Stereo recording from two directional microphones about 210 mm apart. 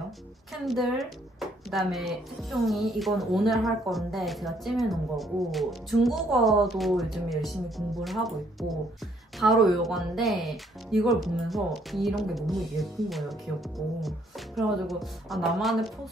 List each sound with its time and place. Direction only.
0.5 s speech: centre (ahead or behind)